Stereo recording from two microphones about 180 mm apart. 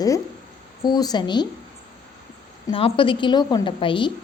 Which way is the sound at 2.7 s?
30° left (ahead or behind).